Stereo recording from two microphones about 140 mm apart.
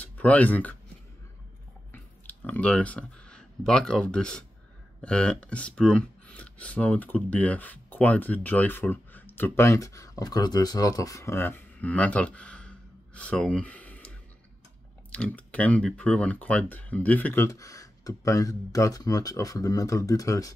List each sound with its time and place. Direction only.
0.0 s speech: 10° left (ahead or behind)
1.9 s speech: 10° left (ahead or behind)